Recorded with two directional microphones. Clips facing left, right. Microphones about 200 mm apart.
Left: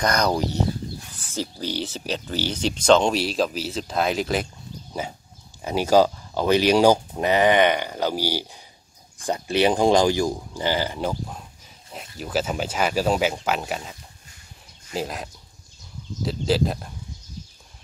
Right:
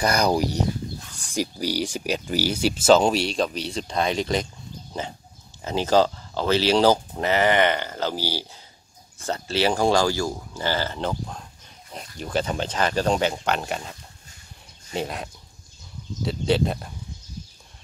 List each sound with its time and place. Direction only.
0.0 s speech: 10° right (ahead or behind)
5.6 s speech: 10° left (ahead or behind)